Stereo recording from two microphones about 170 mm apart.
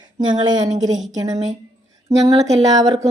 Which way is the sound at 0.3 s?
25° right (ahead or behind).